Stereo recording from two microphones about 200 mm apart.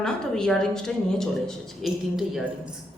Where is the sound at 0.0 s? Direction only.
5° left (ahead or behind).